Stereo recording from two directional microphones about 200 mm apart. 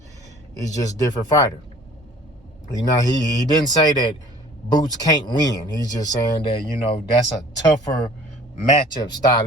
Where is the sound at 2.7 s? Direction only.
20° left (ahead or behind).